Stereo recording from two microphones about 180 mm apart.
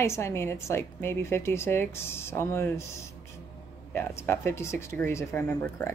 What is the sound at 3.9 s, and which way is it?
A woman's voice, 15° left (ahead or behind).